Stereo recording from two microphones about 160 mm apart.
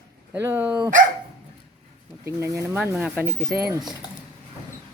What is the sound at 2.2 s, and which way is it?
Speech, 15° right (ahead or behind).